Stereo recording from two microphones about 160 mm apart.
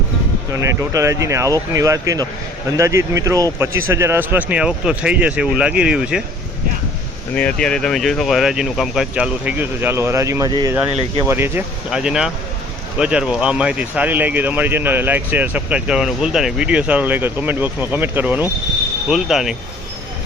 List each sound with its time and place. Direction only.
0.5 s speech: 20° right (ahead or behind)
7.3 s speech: 5° left (ahead or behind)